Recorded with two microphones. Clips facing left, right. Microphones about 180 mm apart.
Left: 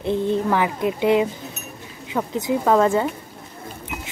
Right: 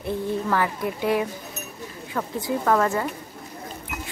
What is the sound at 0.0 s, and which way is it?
A woman's voice, 20° left (ahead or behind).